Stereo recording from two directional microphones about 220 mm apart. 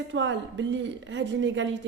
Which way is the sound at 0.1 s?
55° right (ahead or behind).